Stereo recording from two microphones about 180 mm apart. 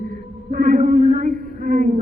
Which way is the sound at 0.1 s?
50° right (ahead or behind).